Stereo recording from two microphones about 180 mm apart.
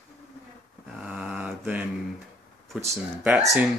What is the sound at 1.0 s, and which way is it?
Mantra, 5° right (ahead or behind).